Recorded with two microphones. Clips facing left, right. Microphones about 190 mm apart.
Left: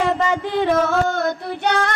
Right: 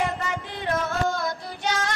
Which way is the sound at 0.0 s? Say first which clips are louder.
Left 8 dB; 90° left.